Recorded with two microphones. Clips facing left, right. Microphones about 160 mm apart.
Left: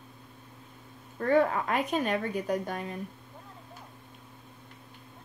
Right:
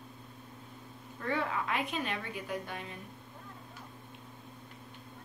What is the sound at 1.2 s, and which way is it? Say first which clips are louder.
A woman's voice: left 9 dB; 45° left (ahead or behind).